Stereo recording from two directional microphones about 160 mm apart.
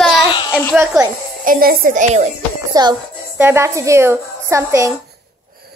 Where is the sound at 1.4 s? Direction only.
65° right (ahead or behind).